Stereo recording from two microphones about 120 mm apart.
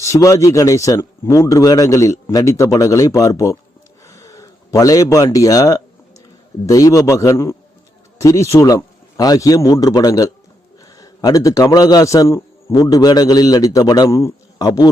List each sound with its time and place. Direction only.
0.0 s speech: 25° left (ahead or behind)
4.0 s a sound: 25° left (ahead or behind)
6.7 s a man's voice: 30° left (ahead or behind)